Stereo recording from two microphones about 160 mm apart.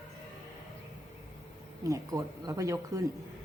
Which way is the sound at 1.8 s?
20° right (ahead or behind).